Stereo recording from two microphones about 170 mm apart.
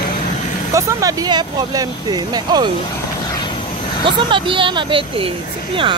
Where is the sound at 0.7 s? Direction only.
20° right (ahead or behind).